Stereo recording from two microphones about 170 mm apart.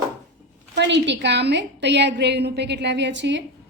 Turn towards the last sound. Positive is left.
turn(degrees=-90)